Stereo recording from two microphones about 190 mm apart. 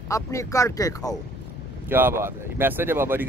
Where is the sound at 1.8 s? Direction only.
10° right (ahead or behind).